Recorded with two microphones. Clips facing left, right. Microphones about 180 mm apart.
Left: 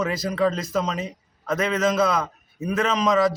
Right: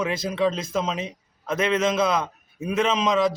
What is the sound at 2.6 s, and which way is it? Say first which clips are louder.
Speech: even; 20° right (ahead or behind).